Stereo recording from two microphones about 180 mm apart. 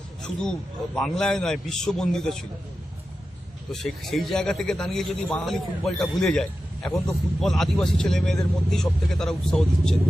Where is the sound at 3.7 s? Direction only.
Centre (ahead or behind).